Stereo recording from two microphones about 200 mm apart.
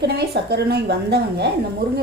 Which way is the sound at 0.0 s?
55° right (ahead or behind).